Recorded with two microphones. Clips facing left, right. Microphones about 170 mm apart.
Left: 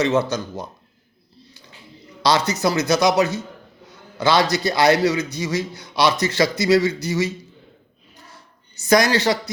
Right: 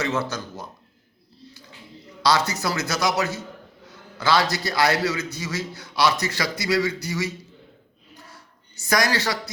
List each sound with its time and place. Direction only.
0.0 s a man's voice: 20° left (ahead or behind)
2.2 s a man's voice: 20° left (ahead or behind)
8.8 s a man's voice: 20° left (ahead or behind)